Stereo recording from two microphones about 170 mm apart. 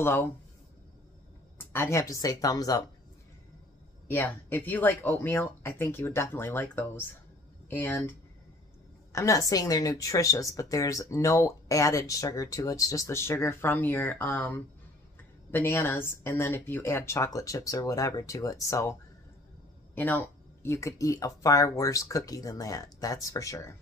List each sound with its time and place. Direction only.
0.0 s speech: 15° left (ahead or behind)
1.6 s a woman's voice: 15° left (ahead or behind)
4.1 s speech: 10° left (ahead or behind)
9.1 s a woman's voice: 20° left (ahead or behind)
15.5 s speech: 10° left (ahead or behind)
20.0 s a woman's voice: 10° left (ahead or behind)